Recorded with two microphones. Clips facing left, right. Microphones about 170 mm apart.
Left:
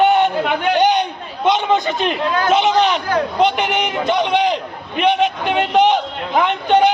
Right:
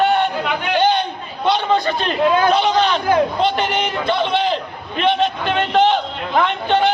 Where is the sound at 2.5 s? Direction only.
20° left (ahead or behind).